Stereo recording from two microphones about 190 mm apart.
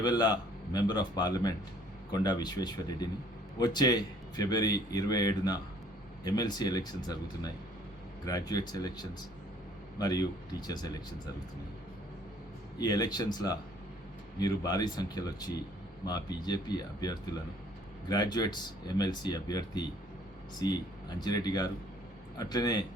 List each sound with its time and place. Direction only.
0.0 s speech: 20° left (ahead or behind)
12.8 s speech: 20° left (ahead or behind)